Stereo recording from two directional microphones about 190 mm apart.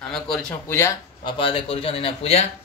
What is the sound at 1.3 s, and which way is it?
Speech, 25° left (ahead or behind).